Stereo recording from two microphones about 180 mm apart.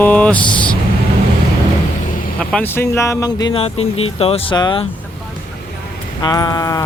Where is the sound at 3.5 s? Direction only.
35° left (ahead or behind).